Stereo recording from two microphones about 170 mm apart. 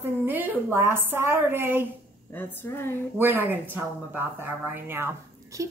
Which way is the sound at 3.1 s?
10° right (ahead or behind).